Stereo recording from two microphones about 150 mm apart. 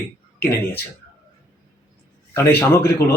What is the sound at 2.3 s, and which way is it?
Speech, 15° left (ahead or behind).